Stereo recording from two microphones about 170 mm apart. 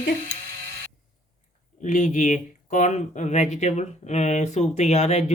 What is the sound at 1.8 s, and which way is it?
Speech, 45° left (ahead or behind).